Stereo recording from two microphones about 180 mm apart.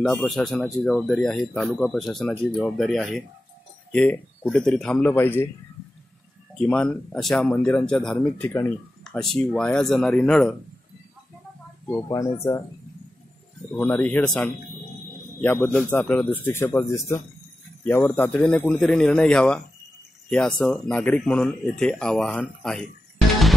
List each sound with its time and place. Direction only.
0.0 s speech: 5° left (ahead or behind)
6.5 s speech: 5° left (ahead or behind)
11.9 s speech: 20° left (ahead or behind)
13.7 s speech: 10° left (ahead or behind)